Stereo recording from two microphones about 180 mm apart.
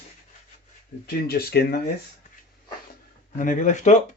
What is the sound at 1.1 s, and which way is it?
Speech, 55° left (ahead or behind).